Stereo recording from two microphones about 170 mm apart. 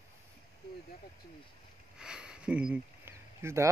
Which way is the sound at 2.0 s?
5° right (ahead or behind).